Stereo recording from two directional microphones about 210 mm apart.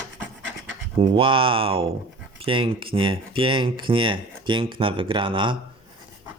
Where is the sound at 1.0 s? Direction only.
25° right (ahead or behind).